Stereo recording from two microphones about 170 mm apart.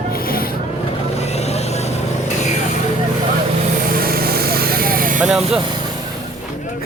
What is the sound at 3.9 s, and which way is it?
Vehicle, 60° right (ahead or behind).